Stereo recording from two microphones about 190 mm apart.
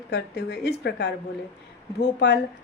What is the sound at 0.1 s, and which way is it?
A woman's voice, 60° left (ahead or behind).